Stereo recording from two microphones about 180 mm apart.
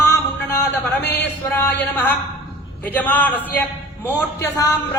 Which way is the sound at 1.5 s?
10° left (ahead or behind).